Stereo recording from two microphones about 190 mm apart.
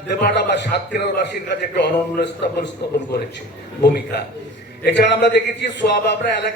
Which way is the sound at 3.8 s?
60° left (ahead or behind).